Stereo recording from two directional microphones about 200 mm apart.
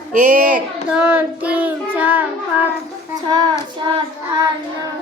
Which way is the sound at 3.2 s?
20° right (ahead or behind).